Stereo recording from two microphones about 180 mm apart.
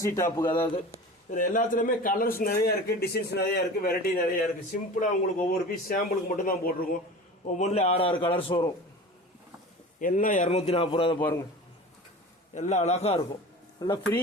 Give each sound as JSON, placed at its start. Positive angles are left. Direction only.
{"t": 0.0, "sound": "speech", "side_deg": 15}
{"t": 1.3, "sound": "a man's voice", "side_deg": 45}
{"t": 5.0, "sound": "speech", "side_deg": 45}
{"t": 7.4, "sound": "a man's voice", "side_deg": 40}
{"t": 10.0, "sound": "a man's voice", "side_deg": 50}
{"t": 11.2, "sound": "a man's voice", "side_deg": 10}
{"t": 12.5, "sound": "a man's voice", "side_deg": 40}
{"t": 13.7, "sound": "speech", "side_deg": 20}